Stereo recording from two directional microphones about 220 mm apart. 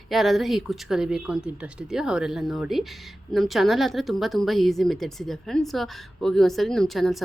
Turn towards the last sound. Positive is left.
turn(degrees=0)  # may be behind; listen again after turning